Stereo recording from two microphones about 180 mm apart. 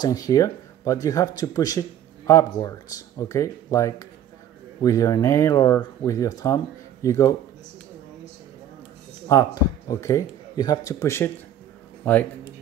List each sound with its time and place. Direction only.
0.0 s speech: 20° left (ahead or behind)
9.3 s a man's voice: 20° left (ahead or behind)